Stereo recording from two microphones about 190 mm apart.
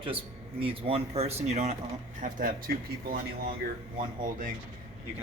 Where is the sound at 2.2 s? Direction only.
50° right (ahead or behind).